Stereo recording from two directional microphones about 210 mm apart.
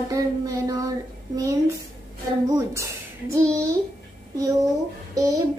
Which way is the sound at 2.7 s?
15° right (ahead or behind).